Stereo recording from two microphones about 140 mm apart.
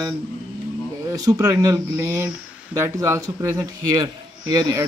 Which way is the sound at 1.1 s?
25° right (ahead or behind).